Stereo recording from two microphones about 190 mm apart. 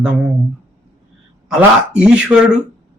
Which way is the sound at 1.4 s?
5° right (ahead or behind).